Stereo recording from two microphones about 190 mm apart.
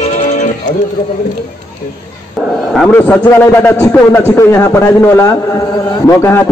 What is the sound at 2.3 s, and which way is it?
A man's voice, centre (ahead or behind).